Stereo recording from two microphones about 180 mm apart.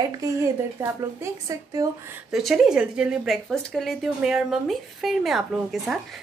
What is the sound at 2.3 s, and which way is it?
Speech, centre (ahead or behind).